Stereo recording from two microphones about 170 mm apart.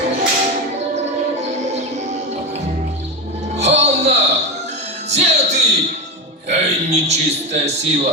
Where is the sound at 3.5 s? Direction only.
40° right (ahead or behind).